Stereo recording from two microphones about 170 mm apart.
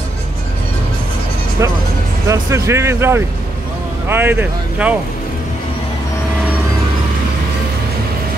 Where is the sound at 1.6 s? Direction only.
15° right (ahead or behind).